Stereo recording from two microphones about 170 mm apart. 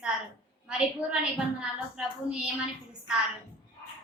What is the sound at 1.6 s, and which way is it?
Speech, 5° right (ahead or behind).